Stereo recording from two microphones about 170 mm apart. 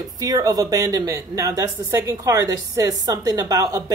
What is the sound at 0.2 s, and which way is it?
A woman's voice, 20° right (ahead or behind).